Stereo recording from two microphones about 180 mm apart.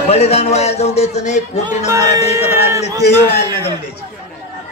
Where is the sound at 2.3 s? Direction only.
15° right (ahead or behind).